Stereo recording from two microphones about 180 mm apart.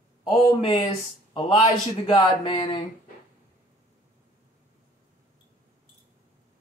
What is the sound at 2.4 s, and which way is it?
Speech, 25° left (ahead or behind).